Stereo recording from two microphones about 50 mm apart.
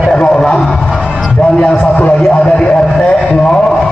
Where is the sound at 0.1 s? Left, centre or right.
Centre.